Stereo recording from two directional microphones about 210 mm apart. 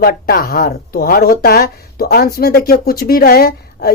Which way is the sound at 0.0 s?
45° left (ahead or behind).